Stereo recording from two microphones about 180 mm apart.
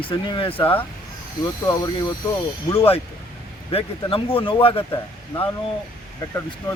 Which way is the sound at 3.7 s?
30° left (ahead or behind).